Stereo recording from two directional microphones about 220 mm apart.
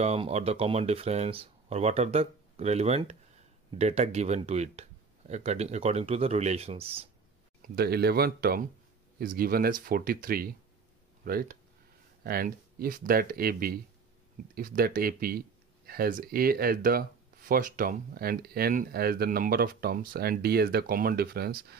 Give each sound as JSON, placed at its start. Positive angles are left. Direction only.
{"t": 0.0, "sound": "speech", "side_deg": -30}
{"t": 7.6, "sound": "speech", "side_deg": -45}